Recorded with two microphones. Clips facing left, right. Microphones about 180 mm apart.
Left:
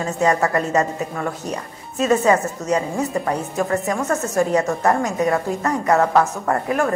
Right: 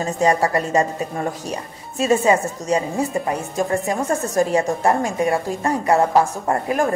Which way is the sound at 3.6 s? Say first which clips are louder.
Right 1 dB; 25° right (ahead or behind).